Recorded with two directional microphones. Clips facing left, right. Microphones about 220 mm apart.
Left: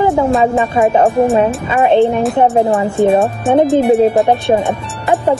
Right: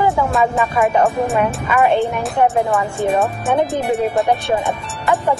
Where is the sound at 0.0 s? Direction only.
30° left (ahead or behind).